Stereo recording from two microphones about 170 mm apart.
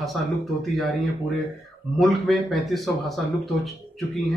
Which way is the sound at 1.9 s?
Centre (ahead or behind).